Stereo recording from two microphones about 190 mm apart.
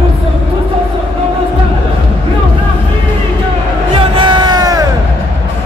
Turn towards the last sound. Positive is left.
turn(degrees=-20)  # may be behind; listen again after turning